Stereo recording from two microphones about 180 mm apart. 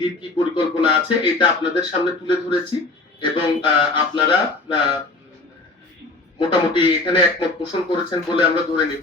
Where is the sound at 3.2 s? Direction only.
25° left (ahead or behind).